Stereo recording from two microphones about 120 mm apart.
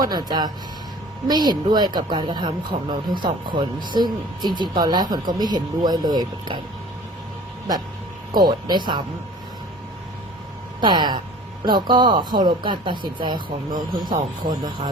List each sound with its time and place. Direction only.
0.0 s speech: 35° right (ahead or behind)
8.3 s speech: 35° right (ahead or behind)
10.8 s speech: 40° right (ahead or behind)